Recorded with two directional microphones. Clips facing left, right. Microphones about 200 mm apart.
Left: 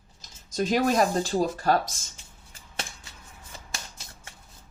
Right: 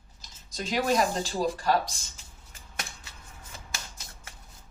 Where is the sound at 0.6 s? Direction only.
45° left (ahead or behind).